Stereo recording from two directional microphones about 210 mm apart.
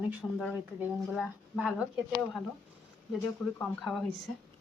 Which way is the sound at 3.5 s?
Centre (ahead or behind).